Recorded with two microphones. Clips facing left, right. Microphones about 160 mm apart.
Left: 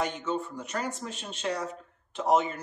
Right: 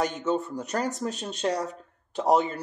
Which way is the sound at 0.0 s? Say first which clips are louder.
Right 4 dB; 40° right (ahead or behind).